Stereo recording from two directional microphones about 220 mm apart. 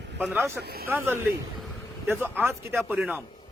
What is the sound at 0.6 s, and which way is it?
Speech, 45° right (ahead or behind).